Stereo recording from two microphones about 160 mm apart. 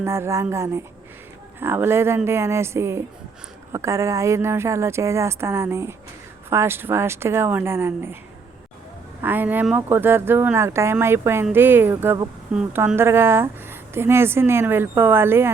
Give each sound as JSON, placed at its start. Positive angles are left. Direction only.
{"t": 0.0, "sound": "a woman's voice", "side_deg": -15}
{"t": 9.2, "sound": "a woman's voice", "side_deg": -10}